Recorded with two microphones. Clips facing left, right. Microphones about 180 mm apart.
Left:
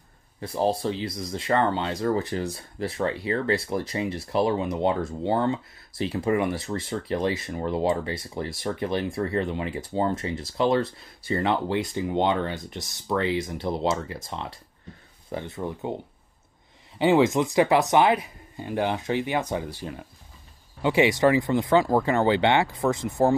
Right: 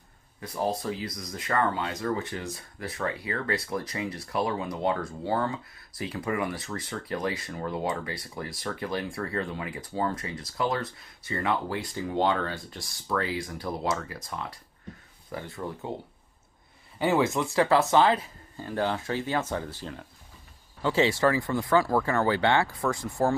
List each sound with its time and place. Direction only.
0.4 s speech: 30° left (ahead or behind)
17.0 s speech: 20° left (ahead or behind)